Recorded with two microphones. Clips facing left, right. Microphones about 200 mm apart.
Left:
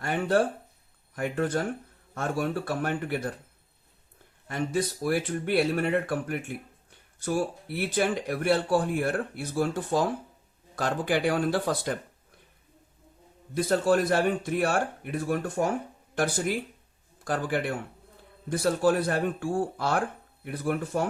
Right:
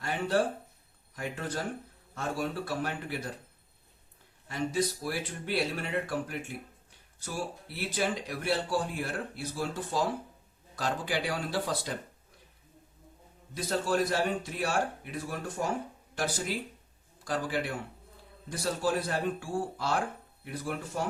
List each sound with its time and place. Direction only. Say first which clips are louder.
0.0 s speech: left 4 dB; 55° left (ahead or behind)
4.4 s speech: left 2 dB; 55° left (ahead or behind)
7.9 s speech: left 5 dB; 60° left (ahead or behind)
13.5 s speech: left 7 dB; 55° left (ahead or behind)